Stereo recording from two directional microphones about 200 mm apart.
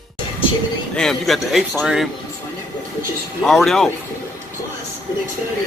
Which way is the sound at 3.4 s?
Centre (ahead or behind).